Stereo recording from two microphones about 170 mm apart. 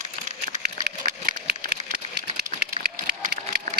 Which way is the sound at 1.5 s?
75° right (ahead or behind).